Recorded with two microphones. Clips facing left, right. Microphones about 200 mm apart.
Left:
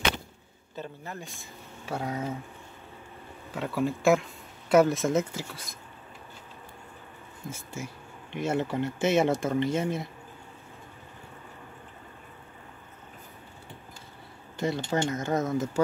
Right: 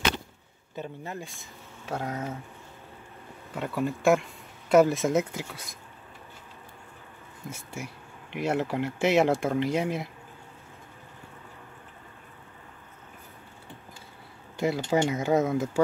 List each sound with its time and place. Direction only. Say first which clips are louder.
0.7 s speech: right 2 dB; 15° right (ahead or behind)
1.9 s speech: even; 10° left (ahead or behind)
3.5 s speech: left 1 dB; centre (ahead or behind)
7.7 s speech: even; centre (ahead or behind)
14.6 s speech: right 3 dB; centre (ahead or behind)